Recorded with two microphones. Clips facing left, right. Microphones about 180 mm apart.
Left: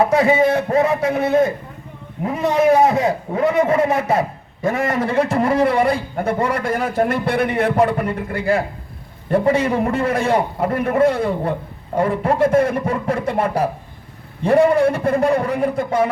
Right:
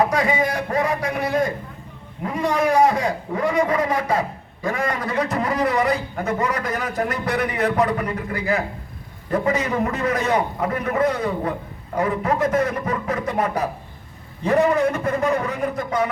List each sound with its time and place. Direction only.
0.0 s a man's voice: 25° left (ahead or behind)